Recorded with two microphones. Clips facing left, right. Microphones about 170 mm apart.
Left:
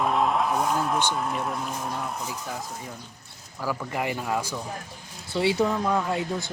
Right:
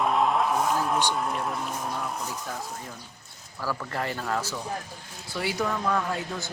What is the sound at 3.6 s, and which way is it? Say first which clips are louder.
Speech: left 2 dB; 15° left (ahead or behind).